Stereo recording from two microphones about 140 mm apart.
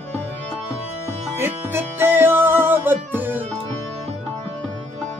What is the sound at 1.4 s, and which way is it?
Music, 15° right (ahead or behind).